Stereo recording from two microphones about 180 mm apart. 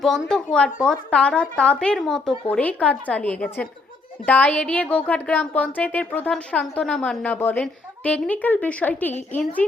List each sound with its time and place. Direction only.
0.0 s speech: 5° left (ahead or behind)